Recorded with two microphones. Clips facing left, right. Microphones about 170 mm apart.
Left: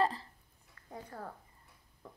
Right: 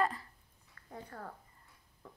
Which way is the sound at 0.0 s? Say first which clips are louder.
Left 2 dB; 30° left (ahead or behind).